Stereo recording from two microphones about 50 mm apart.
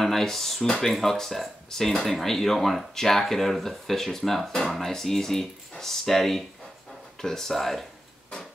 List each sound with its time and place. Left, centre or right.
0.0 s speech: centre